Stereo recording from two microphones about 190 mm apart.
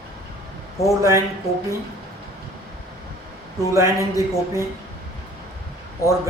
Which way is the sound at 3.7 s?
15° right (ahead or behind).